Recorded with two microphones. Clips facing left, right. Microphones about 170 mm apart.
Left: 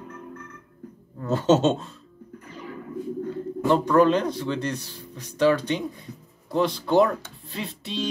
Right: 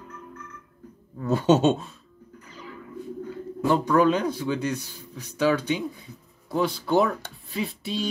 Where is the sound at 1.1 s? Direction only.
10° right (ahead or behind).